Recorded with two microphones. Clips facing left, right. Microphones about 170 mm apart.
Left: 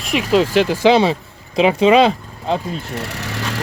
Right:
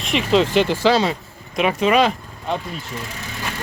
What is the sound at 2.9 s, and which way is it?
Vehicle, 70° left (ahead or behind).